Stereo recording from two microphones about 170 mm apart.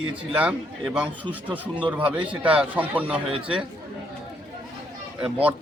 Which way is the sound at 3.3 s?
35° right (ahead or behind).